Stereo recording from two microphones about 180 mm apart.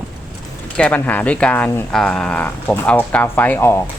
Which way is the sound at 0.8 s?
10° left (ahead or behind).